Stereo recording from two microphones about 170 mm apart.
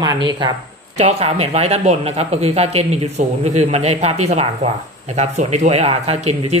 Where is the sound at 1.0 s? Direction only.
40° right (ahead or behind).